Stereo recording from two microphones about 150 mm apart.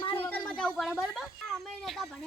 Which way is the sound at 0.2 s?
10° left (ahead or behind).